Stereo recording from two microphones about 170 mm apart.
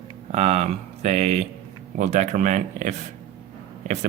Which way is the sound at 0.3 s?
40° right (ahead or behind).